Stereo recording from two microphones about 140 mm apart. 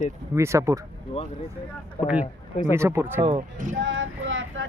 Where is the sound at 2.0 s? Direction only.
60° left (ahead or behind).